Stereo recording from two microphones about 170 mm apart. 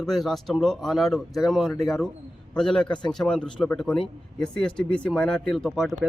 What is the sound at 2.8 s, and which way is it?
Speech, 25° left (ahead or behind).